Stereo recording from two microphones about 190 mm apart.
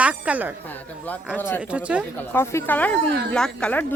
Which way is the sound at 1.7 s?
5° right (ahead or behind).